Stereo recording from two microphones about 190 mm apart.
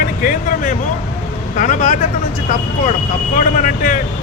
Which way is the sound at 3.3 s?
45° left (ahead or behind).